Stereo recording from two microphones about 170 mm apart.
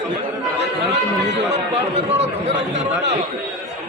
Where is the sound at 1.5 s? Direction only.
40° right (ahead or behind).